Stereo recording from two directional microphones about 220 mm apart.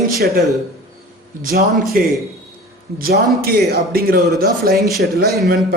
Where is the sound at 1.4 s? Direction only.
40° right (ahead or behind).